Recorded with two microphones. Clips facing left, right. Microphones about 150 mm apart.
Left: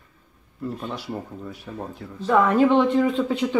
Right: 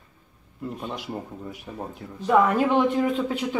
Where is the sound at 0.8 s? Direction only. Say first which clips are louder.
Left 1 dB; 15° right (ahead or behind).